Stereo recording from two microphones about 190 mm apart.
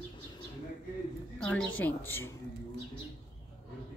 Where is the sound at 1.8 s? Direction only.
10° left (ahead or behind).